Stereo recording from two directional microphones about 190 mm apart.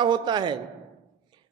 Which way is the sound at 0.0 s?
25° right (ahead or behind).